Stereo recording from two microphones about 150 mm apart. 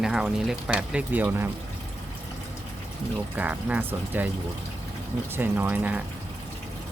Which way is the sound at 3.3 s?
10° right (ahead or behind).